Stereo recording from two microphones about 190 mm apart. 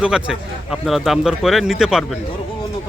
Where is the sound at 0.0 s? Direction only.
5° right (ahead or behind).